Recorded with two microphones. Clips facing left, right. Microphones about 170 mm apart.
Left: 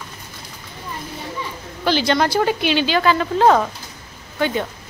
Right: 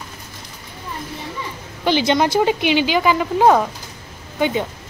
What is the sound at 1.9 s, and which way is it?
Speech, 20° right (ahead or behind).